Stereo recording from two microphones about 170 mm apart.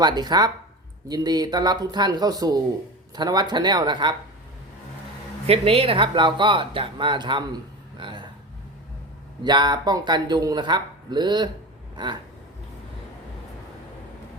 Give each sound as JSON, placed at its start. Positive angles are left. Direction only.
{"t": 0.0, "sound": "speech", "side_deg": -25}
{"t": 5.5, "sound": "speech", "side_deg": -35}
{"t": 9.4, "sound": "speech", "side_deg": -25}